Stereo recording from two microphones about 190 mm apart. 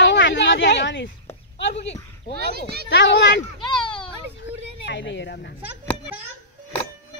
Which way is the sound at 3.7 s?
25° left (ahead or behind).